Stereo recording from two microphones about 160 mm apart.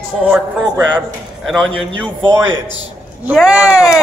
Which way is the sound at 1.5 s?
5° left (ahead or behind).